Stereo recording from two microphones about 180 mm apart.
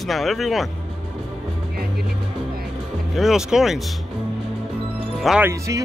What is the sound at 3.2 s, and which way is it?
Speech, 5° right (ahead or behind).